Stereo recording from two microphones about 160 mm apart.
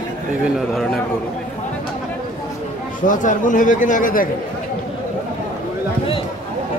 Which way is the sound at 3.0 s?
55° left (ahead or behind).